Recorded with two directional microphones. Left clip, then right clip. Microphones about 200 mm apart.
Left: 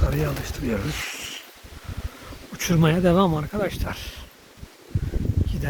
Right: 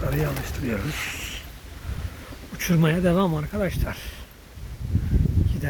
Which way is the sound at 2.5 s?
15° left (ahead or behind).